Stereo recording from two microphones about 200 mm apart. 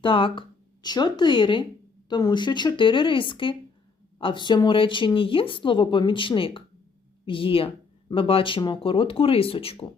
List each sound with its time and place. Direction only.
0.0 s speech: 25° left (ahead or behind)